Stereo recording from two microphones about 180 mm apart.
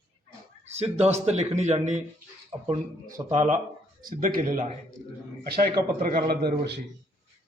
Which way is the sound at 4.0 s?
50° right (ahead or behind).